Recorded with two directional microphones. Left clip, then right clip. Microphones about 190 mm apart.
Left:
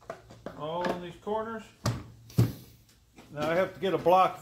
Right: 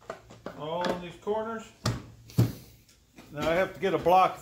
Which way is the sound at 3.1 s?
15° right (ahead or behind).